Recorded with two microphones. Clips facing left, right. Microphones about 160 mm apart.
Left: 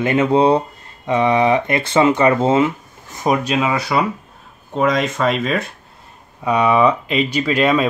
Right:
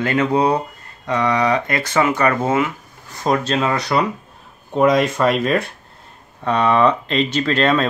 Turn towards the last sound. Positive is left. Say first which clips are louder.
# left 1 dB
turn(degrees=10)  # may be behind; listen again after turning